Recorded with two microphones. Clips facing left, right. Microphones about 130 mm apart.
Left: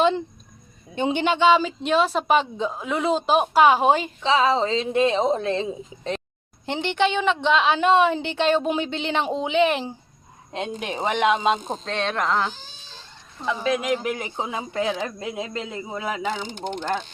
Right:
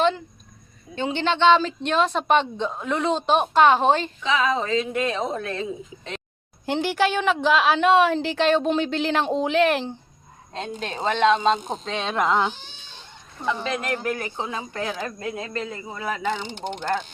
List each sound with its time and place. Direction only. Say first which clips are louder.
0.9 s a woman's voice: left 2 dB; 15° left (ahead or behind)
4.2 s a woman's voice: left 3 dB; 30° left (ahead or behind)
6.7 s a woman's voice: right 1 dB; 5° right (ahead or behind)
10.5 s speech: left 2 dB; 15° left (ahead or behind)
11.8 s speech: right 1 dB; 5° right (ahead or behind)
13.4 s speech: left 2 dB; 5° left (ahead or behind)